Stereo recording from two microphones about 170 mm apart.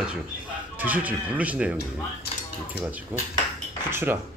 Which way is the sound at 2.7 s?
10° right (ahead or behind).